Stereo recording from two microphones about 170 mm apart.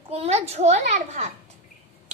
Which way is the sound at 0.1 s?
35° right (ahead or behind).